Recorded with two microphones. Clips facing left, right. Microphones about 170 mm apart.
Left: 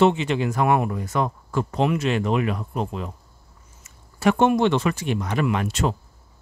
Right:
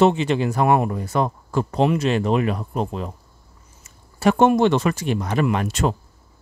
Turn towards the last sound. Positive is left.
turn(degrees=-45)  # may be behind; listen again after turning